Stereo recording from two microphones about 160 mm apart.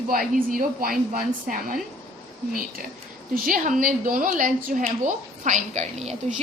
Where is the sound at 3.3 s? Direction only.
55° right (ahead or behind).